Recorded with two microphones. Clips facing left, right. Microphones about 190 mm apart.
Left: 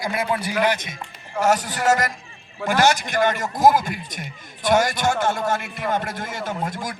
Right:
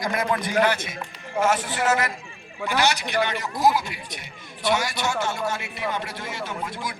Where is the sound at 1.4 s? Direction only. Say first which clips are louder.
Left 2 dB; 40° left (ahead or behind).